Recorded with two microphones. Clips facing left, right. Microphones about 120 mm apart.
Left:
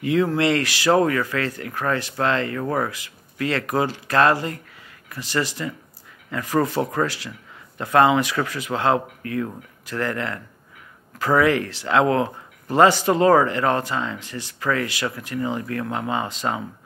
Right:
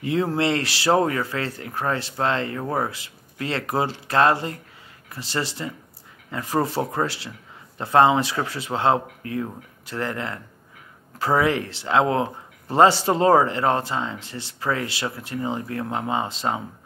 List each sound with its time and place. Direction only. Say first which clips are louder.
0.0 s speech: left 2 dB; 30° right (ahead or behind)